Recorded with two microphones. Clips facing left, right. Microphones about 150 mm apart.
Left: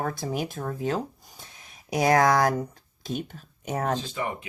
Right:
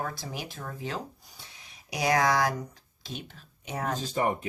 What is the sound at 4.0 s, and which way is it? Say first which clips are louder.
Speech: right 3 dB; 40° right (ahead or behind).